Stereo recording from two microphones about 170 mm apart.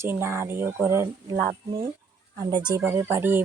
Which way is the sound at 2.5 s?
25° right (ahead or behind).